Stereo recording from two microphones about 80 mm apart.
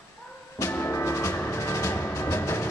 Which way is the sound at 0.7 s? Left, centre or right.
Left.